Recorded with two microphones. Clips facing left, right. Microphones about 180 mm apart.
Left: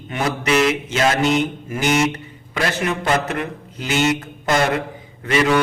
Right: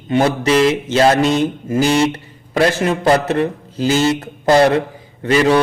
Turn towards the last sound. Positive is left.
turn(degrees=-35)  # may be behind; listen again after turning